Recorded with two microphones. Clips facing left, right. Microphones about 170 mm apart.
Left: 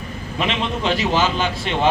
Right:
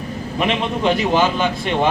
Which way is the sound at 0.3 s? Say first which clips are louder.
Right 3 dB; 50° right (ahead or behind).